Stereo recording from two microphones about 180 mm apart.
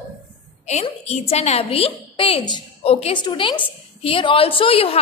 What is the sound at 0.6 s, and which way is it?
A woman's voice, 40° left (ahead or behind).